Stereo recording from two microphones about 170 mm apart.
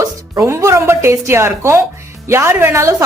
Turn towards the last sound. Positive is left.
turn(degrees=-20)  # may be behind; listen again after turning